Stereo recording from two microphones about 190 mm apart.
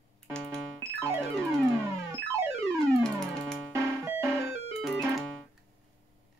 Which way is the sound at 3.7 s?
15° right (ahead or behind).